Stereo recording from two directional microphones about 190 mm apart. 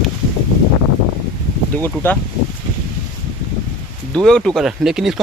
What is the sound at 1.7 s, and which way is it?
Speech, 10° left (ahead or behind).